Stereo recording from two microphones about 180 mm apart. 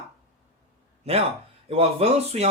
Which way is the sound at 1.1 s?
35° right (ahead or behind).